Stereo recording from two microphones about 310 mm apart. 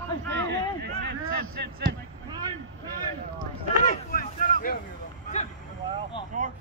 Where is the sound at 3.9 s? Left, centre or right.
Left.